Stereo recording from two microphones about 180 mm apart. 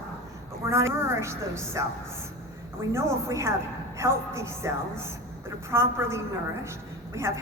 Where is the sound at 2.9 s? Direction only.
15° right (ahead or behind).